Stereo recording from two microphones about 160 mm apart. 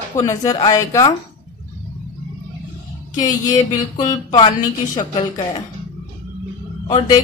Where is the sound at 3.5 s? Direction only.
30° left (ahead or behind).